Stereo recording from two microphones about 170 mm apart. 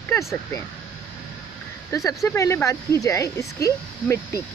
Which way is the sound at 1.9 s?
20° left (ahead or behind).